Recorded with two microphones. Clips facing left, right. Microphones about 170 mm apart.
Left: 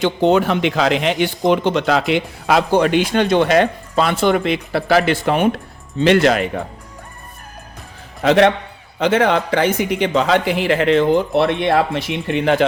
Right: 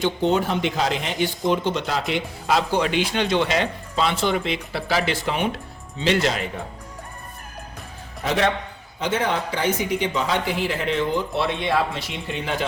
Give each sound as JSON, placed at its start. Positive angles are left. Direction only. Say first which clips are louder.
{"t": 0.0, "sound": "speech", "louder": "left 6 dB", "side_deg": 80}
{"t": 8.2, "sound": "a man's voice", "louder": "left 9 dB", "side_deg": 75}